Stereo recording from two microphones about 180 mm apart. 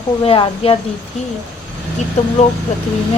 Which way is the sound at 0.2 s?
30° left (ahead or behind).